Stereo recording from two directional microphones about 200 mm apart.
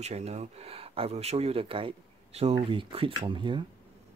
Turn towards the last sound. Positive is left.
turn(degrees=-25)  # may be behind; listen again after turning